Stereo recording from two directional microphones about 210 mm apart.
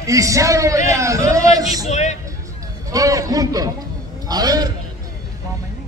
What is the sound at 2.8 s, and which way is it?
A man's voice, 15° right (ahead or behind).